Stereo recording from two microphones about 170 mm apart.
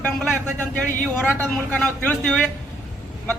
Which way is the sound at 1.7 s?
5° left (ahead or behind).